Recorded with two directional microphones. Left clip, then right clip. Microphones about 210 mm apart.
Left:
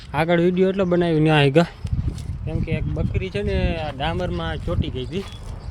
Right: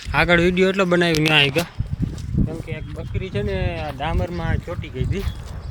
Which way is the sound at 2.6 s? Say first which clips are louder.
Left 5 dB; 5° left (ahead or behind).